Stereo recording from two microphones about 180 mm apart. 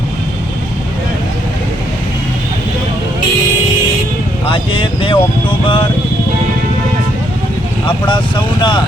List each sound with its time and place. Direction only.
4.4 s speech: 30° left (ahead or behind)
7.9 s speech: 25° left (ahead or behind)